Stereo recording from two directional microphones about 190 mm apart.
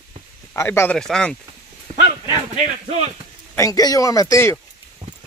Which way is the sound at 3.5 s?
20° left (ahead or behind).